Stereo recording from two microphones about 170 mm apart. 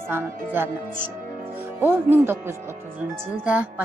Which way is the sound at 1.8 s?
10° right (ahead or behind).